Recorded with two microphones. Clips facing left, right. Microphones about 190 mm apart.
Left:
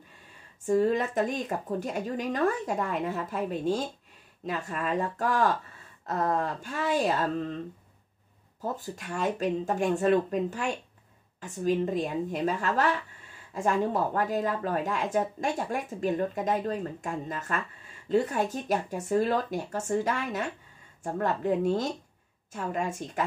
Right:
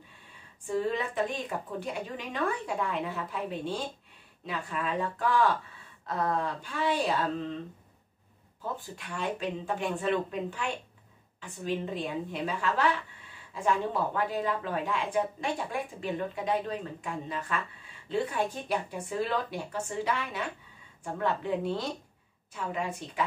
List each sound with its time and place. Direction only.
0.7 s speech: 45° left (ahead or behind)
8.7 s speech: 40° left (ahead or behind)